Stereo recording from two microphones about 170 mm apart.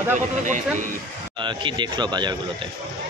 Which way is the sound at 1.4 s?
30° right (ahead or behind).